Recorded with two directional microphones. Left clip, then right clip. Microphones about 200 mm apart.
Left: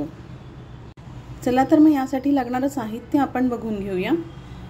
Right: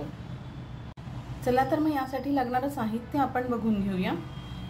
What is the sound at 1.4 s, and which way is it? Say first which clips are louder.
A woman's voice: left 9 dB; 35° left (ahead or behind).